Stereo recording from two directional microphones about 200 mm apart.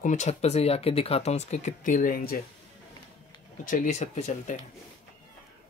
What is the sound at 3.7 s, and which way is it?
Speech, 40° left (ahead or behind).